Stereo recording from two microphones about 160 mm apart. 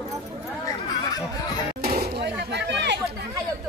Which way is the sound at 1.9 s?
85° right.